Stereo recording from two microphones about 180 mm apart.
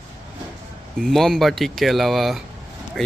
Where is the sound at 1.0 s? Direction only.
Centre (ahead or behind).